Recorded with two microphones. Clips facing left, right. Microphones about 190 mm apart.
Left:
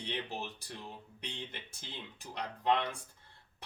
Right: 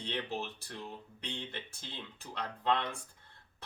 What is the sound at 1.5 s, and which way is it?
Speech, 15° left (ahead or behind).